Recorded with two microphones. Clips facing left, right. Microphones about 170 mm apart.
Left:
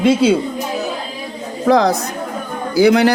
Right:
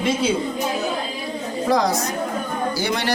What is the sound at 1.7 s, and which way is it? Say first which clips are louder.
Speech: left 7 dB; 60° left (ahead or behind).